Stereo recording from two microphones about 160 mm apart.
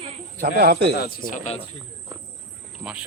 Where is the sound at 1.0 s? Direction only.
60° left (ahead or behind).